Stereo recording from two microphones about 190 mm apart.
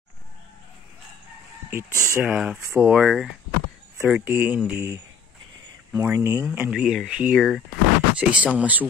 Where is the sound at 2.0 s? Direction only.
10° right (ahead or behind).